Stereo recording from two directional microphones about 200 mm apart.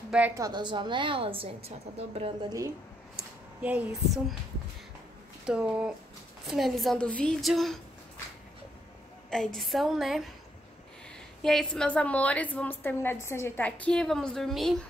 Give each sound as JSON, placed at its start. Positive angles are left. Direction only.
{"t": 0.4, "sound": "a woman's voice", "side_deg": -20}
{"t": 3.6, "sound": "a woman's voice", "side_deg": -5}
{"t": 5.4, "sound": "a woman's voice", "side_deg": -5}
{"t": 9.3, "sound": "a woman's voice", "side_deg": 0}
{"t": 11.4, "sound": "a woman's voice", "side_deg": 5}